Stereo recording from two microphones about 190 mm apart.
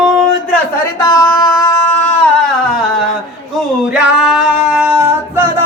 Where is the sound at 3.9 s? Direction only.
5° right (ahead or behind).